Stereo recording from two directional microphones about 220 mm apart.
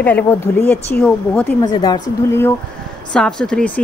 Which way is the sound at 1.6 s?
20° left (ahead or behind).